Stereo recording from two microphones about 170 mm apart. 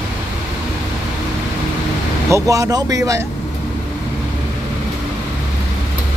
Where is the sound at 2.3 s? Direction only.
20° right (ahead or behind).